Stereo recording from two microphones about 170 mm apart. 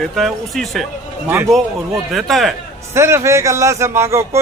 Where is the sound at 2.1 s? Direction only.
Centre (ahead or behind).